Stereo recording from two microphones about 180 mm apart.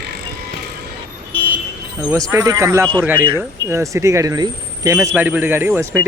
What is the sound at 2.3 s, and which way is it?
Speech, 15° right (ahead or behind).